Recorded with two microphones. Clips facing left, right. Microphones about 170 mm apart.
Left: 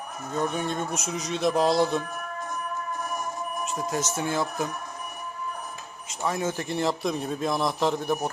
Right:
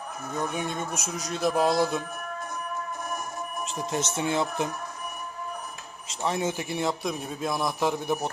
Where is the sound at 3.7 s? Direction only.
25° right (ahead or behind).